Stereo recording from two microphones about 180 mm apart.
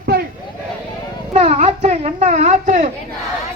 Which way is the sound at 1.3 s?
35° right (ahead or behind).